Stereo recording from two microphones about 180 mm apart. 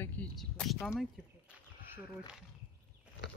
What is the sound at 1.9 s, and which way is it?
Speech, 5° right (ahead or behind).